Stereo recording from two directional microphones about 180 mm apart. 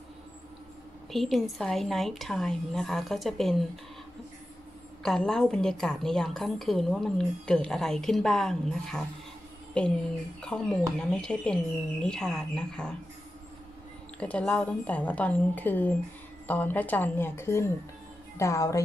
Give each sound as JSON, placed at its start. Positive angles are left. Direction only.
{"t": 1.1, "sound": "a woman's voice", "side_deg": 0}
{"t": 5.0, "sound": "a woman's voice", "side_deg": 5}
{"t": 10.4, "sound": "a woman's voice", "side_deg": 5}
{"t": 14.2, "sound": "a woman's voice", "side_deg": 5}